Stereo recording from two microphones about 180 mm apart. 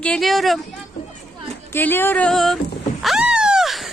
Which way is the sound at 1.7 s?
10° left (ahead or behind).